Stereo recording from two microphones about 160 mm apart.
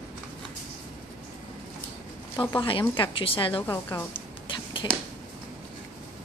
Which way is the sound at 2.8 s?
30° left (ahead or behind).